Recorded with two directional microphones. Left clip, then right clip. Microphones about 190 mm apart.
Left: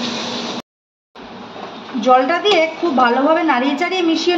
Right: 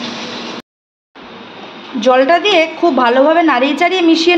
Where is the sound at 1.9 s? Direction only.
55° right (ahead or behind).